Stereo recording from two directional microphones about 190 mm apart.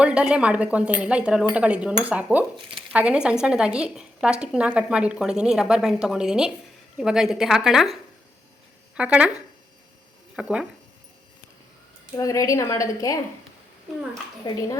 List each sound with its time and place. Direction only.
0.0 s a woman's voice: 5° right (ahead or behind)
9.0 s speech: 5° right (ahead or behind)
10.3 s a woman's voice: 5° right (ahead or behind)
12.1 s a woman's voice: 15° left (ahead or behind)
14.5 s speech: 20° left (ahead or behind)